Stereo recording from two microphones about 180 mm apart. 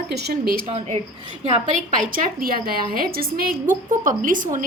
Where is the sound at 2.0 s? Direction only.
55° right (ahead or behind).